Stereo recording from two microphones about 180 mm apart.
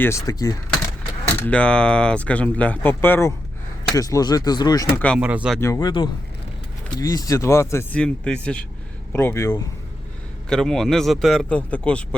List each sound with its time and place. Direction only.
0.0 s speech: 15° left (ahead or behind)
1.5 s speech: 5° left (ahead or behind)
5.2 s speech: 5° right (ahead or behind)
5.5 s speech: 15° left (ahead or behind)
10.5 s a man's voice: 5° left (ahead or behind)